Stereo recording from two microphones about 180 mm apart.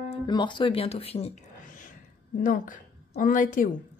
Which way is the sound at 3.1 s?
50° left (ahead or behind).